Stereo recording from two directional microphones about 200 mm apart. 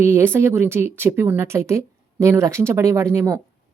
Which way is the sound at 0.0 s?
10° right (ahead or behind).